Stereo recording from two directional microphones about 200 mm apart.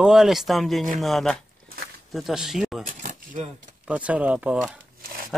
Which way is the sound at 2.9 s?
40° right (ahead or behind).